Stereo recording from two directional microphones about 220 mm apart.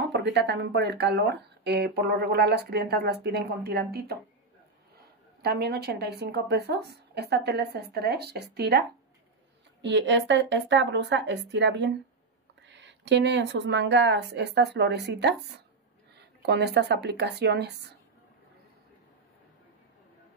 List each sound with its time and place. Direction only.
0.1 s speech: 50° right (ahead or behind)
16.4 s speech: 50° right (ahead or behind)